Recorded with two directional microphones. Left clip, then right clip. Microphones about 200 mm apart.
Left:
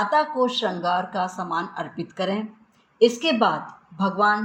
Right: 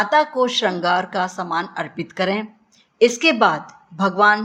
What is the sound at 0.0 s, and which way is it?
Speech, 25° right (ahead or behind).